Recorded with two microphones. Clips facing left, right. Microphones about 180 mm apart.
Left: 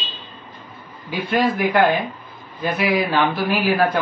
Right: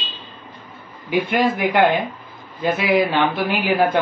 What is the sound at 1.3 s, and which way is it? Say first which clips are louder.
Music: left 2 dB; 20° right (ahead or behind).